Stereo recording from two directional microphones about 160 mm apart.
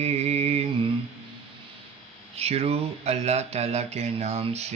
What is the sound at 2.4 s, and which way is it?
Mantra, 40° right (ahead or behind).